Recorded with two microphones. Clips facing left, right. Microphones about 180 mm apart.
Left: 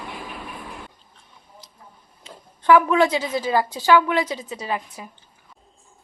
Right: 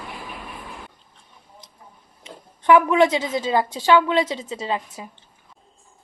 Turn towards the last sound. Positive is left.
turn(degrees=-25)  # may be behind; listen again after turning